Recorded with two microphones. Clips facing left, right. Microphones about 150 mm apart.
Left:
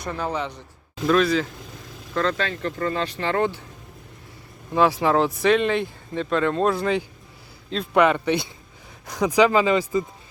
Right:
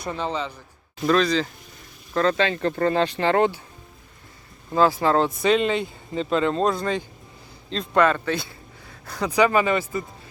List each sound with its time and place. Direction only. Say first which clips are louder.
0.3 s speech: left 2 dB; 15° left (ahead or behind)
1.0 s speech: left 1 dB; 5° left (ahead or behind)
2.6 s speech: right 4 dB; 40° right (ahead or behind)
4.7 s speech: even; 5° left (ahead or behind)